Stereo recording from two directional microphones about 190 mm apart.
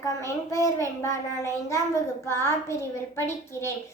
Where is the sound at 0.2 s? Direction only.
15° left (ahead or behind).